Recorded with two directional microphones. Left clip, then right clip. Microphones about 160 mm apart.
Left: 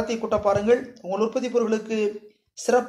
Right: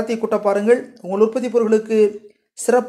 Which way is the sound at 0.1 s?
35° right (ahead or behind).